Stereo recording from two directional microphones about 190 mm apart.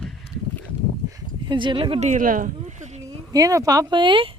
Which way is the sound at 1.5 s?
25° right (ahead or behind).